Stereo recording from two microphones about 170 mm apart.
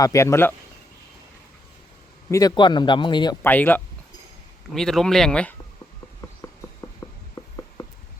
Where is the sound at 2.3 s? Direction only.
20° left (ahead or behind).